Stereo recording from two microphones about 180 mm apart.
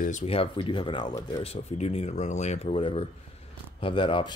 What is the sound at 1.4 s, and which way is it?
Speech, 35° left (ahead or behind).